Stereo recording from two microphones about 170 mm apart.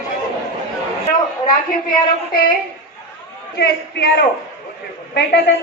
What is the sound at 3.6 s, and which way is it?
Speech, 70° left (ahead or behind).